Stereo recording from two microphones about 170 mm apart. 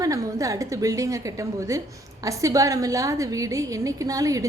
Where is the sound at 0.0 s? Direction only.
20° right (ahead or behind).